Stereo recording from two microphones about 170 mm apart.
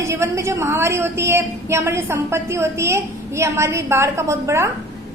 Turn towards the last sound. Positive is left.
turn(degrees=-15)  # may be behind; listen again after turning